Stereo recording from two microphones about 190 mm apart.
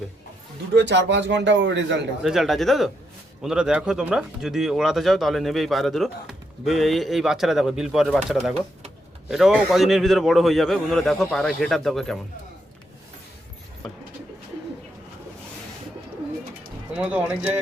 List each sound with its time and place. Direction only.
0.7 s a man's voice: 65° right (ahead or behind)
2.2 s speech: centre (ahead or behind)
13.8 s a sound: centre (ahead or behind)
16.9 s speech: 5° right (ahead or behind)